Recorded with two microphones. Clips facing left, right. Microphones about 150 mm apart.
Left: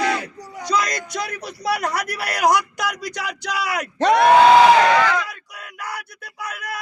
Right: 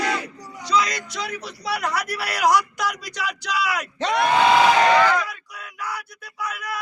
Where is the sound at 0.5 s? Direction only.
50° left (ahead or behind).